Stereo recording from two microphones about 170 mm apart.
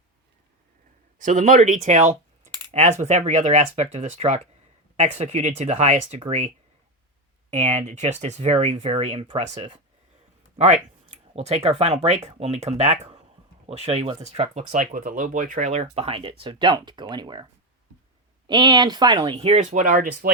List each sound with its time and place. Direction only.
1.2 s speech: 50° right (ahead or behind)
7.5 s speech: 45° right (ahead or behind)
10.6 s speech: 40° right (ahead or behind)
15.5 s speech: 40° right (ahead or behind)
18.4 s speech: 25° right (ahead or behind); by 20.3 s 50° right (ahead or behind)